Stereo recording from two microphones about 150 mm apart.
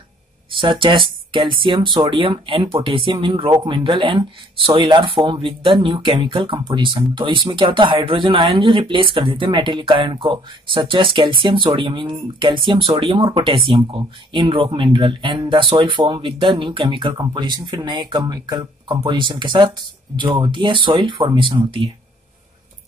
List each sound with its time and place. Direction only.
0.5 s speech: 35° right (ahead or behind)